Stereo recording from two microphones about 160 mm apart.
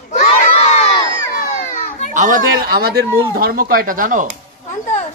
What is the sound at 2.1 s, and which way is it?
Speech, 55° right (ahead or behind).